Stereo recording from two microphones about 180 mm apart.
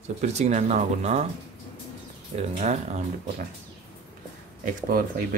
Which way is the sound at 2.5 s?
40° right (ahead or behind).